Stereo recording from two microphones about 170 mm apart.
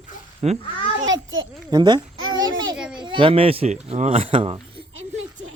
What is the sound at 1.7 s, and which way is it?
Babbling, 25° right (ahead or behind).